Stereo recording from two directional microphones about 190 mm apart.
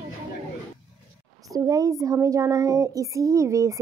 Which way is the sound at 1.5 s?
20° right (ahead or behind).